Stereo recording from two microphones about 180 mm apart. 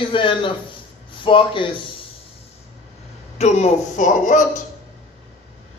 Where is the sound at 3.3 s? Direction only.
40° left (ahead or behind).